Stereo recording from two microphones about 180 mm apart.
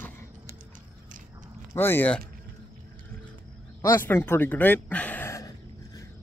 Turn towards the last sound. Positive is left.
turn(degrees=15)  # may be behind; listen again after turning